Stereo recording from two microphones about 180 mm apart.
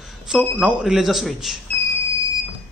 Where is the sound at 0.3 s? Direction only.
5° right (ahead or behind).